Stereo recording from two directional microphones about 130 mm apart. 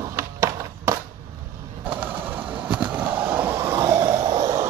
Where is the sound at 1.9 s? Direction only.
15° right (ahead or behind); by 4.7 s 30° right (ahead or behind).